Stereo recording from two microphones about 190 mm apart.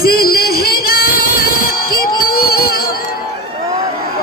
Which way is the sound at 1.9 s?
50° left (ahead or behind).